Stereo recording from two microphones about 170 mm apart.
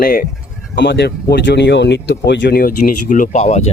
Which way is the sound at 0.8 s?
85° left.